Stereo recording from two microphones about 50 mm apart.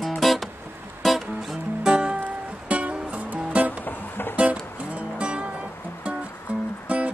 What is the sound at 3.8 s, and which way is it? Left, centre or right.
Music, left.